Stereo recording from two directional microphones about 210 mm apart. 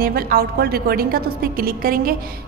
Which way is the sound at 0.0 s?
45° right (ahead or behind).